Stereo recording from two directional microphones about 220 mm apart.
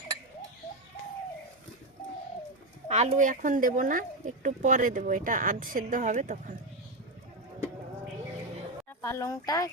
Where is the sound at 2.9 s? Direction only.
30° right (ahead or behind).